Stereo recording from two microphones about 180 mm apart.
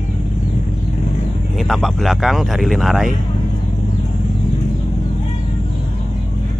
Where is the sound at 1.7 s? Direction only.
Centre (ahead or behind).